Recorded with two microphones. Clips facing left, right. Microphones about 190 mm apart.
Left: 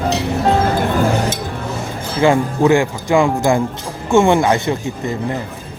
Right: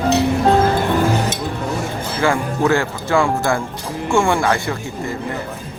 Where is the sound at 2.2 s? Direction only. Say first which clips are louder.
Left 5 dB; 20° left (ahead or behind).